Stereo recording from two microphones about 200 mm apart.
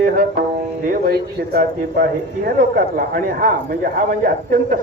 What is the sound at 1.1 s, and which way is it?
Speech, 50° right (ahead or behind).